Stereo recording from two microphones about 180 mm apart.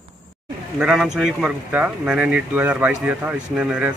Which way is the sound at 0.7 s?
5° right (ahead or behind).